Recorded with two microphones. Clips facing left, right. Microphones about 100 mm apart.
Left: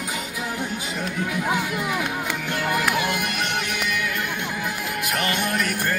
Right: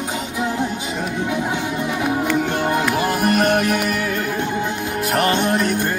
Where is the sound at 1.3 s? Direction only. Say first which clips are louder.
Right 2 dB; 30° right (ahead or behind).